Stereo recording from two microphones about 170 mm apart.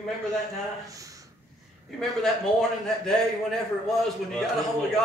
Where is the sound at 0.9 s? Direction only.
20° right (ahead or behind).